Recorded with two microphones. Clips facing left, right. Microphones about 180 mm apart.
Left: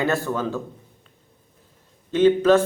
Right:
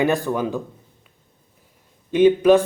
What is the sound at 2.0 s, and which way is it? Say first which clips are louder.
Speech: right 2 dB; 15° right (ahead or behind).